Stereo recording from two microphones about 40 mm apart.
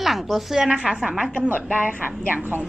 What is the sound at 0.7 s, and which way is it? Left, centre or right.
Speech, right.